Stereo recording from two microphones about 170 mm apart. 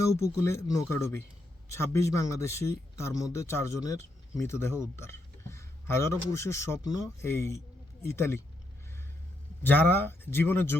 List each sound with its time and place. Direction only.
0.0 s speech: 15° left (ahead or behind)
9.6 s speech: 10° left (ahead or behind)